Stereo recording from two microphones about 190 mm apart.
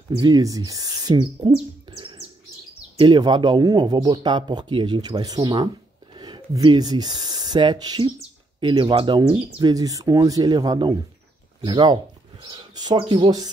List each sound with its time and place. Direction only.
0.2 s speech: 20° right (ahead or behind)